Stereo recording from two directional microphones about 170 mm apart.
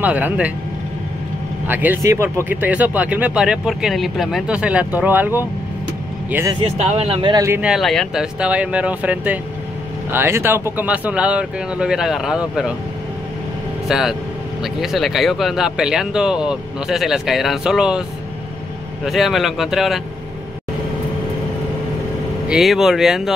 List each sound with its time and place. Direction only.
0.0 s speech: 10° right (ahead or behind)
1.7 s speech: 10° right (ahead or behind)
6.6 s speech: 35° right (ahead or behind)
7.4 s speech: 15° right (ahead or behind)
7.7 s speech: centre (ahead or behind)
13.8 s speech: 5° right (ahead or behind)
19.0 s speech: centre (ahead or behind)
22.5 s speech: centre (ahead or behind)